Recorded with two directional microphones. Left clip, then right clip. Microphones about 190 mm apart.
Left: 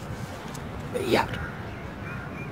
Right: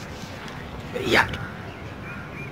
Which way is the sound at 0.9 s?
Centre (ahead or behind).